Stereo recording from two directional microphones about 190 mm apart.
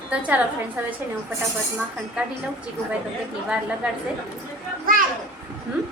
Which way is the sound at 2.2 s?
5° right (ahead or behind).